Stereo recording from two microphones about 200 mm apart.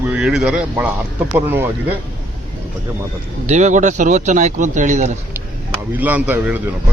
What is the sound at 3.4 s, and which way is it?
Speech, 35° right (ahead or behind).